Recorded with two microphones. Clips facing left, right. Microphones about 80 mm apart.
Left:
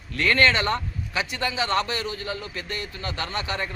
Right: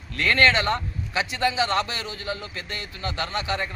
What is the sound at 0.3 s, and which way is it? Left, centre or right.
Speech, right.